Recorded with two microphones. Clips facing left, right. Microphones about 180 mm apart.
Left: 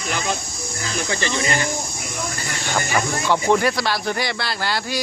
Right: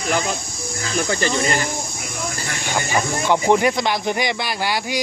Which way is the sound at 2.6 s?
15° right (ahead or behind).